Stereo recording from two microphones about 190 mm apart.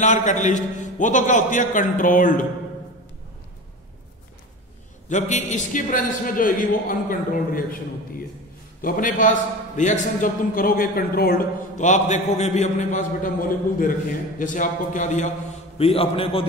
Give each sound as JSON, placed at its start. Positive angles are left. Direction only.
{"t": 0.0, "sound": "a man's voice", "side_deg": 40}
{"t": 5.1, "sound": "a man's voice", "side_deg": 40}
{"t": 8.8, "sound": "a man's voice", "side_deg": 45}
{"t": 15.8, "sound": "a man's voice", "side_deg": 30}